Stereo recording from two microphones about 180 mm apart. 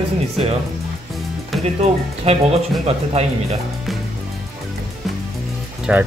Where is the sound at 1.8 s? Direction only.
35° right (ahead or behind).